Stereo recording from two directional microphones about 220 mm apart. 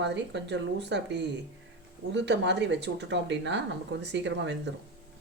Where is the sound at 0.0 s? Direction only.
55° right (ahead or behind).